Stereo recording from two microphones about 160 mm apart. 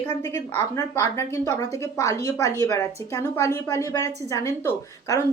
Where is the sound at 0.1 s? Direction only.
45° right (ahead or behind).